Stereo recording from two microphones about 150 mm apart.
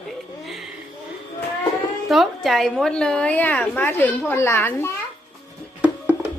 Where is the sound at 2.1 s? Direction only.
Centre (ahead or behind); by 4.9 s 15° left (ahead or behind).